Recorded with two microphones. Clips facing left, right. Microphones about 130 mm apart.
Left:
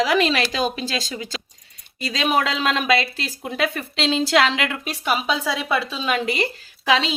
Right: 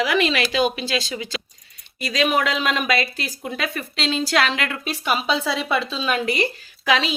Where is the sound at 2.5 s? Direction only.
15° right (ahead or behind).